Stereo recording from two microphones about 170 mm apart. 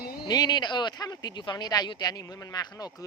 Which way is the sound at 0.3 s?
25° left (ahead or behind).